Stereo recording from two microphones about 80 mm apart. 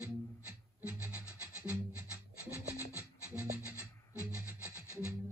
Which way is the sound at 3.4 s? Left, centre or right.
Right.